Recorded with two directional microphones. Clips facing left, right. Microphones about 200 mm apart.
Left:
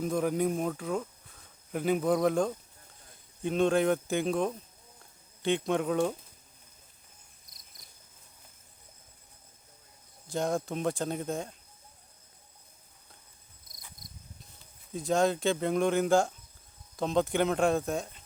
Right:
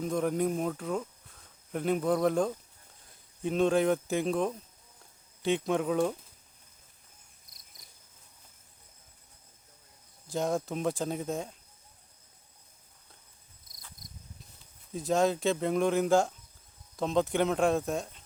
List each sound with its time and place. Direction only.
0.0 s speech: centre (ahead or behind)
10.2 s speech: centre (ahead or behind)
14.9 s speech: centre (ahead or behind)